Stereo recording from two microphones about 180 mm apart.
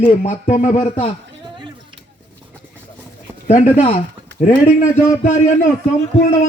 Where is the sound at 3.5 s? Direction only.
40° left (ahead or behind).